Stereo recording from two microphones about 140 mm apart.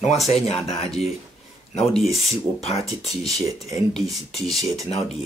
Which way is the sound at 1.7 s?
5° left (ahead or behind).